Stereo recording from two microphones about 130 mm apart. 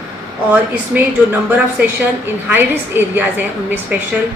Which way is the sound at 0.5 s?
15° right (ahead or behind).